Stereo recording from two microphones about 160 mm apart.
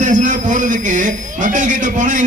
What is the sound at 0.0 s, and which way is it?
A man's voice, 50° right (ahead or behind).